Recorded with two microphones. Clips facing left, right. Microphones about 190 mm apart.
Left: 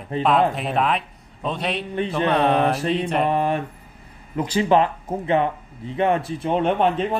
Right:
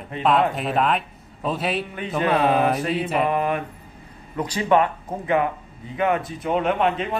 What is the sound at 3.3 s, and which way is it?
Speech, 30° left (ahead or behind).